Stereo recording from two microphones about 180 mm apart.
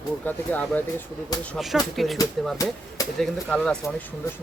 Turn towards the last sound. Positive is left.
turn(degrees=5)  # may be behind; listen again after turning